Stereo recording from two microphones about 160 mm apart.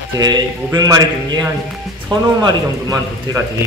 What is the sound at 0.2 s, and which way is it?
Speech, 25° right (ahead or behind).